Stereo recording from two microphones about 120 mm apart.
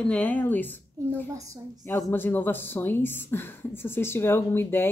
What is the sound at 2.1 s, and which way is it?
Speech, 15° left (ahead or behind).